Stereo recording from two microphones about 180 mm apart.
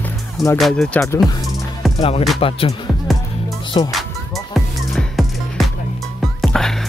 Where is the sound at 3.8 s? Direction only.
30° left (ahead or behind).